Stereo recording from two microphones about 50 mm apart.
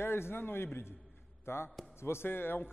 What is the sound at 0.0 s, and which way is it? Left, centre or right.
A man's voice, left.